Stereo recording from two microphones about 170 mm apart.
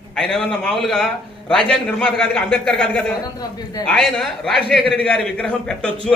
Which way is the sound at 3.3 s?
25° left (ahead or behind).